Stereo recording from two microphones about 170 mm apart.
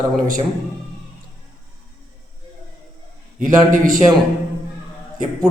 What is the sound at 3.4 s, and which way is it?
Speech, 50° right (ahead or behind).